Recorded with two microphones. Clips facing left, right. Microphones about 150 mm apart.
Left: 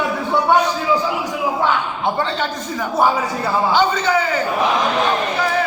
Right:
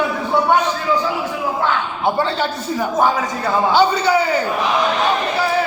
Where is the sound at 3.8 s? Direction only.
10° right (ahead or behind).